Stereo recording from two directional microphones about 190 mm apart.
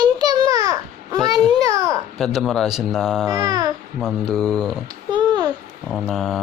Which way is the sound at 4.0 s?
Centre (ahead or behind).